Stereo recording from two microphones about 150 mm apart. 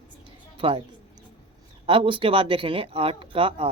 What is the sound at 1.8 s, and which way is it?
Speech, 35° right (ahead or behind).